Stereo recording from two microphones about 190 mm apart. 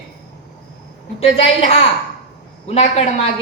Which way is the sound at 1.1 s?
30° left (ahead or behind).